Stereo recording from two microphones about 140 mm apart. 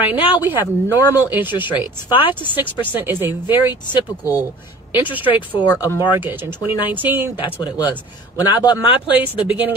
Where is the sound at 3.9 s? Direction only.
25° left (ahead or behind).